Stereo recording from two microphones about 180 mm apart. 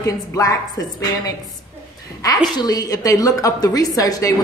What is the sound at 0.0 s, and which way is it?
Speech, 15° left (ahead or behind).